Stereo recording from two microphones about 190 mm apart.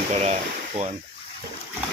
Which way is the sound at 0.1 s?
35° right (ahead or behind).